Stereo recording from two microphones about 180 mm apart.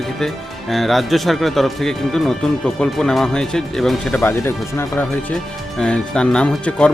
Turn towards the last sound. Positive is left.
turn(degrees=5)  # may be behind; listen again after turning